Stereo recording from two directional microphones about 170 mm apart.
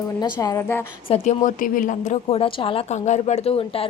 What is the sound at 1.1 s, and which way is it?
Speech, 45° left (ahead or behind).